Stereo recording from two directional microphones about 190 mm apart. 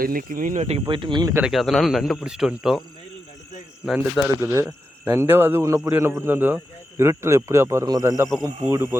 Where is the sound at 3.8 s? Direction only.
5° right (ahead or behind).